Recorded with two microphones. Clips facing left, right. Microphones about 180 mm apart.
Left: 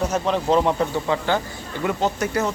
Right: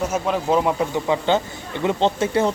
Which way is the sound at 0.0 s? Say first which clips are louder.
Even; 5° right (ahead or behind).